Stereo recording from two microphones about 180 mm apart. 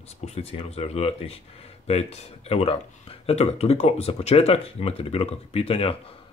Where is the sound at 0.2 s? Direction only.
35° left (ahead or behind).